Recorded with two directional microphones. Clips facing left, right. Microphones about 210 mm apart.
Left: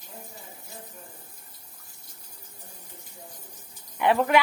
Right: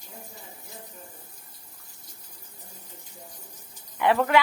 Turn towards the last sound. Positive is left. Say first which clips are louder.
# even
turn(degrees=15)  # may be behind; listen again after turning